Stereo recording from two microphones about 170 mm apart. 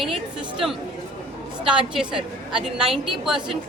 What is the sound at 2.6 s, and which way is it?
Speech, centre (ahead or behind).